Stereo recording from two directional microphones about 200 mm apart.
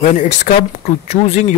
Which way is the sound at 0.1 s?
35° left (ahead or behind).